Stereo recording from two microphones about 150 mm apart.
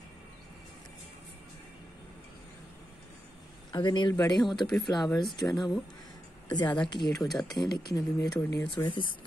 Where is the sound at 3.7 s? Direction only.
30° left (ahead or behind).